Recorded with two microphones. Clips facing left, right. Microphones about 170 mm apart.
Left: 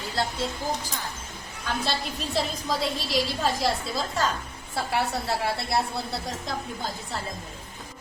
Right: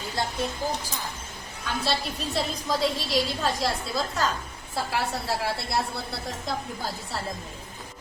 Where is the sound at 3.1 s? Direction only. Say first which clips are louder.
Even; centre (ahead or behind).